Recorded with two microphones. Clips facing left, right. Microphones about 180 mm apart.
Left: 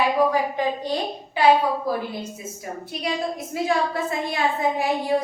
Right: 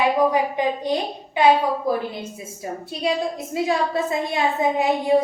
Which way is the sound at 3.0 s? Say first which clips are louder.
Right 4 dB; 25° right (ahead or behind).